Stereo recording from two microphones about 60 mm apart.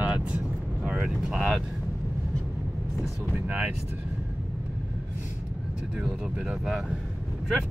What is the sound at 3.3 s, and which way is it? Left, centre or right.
Speech, centre.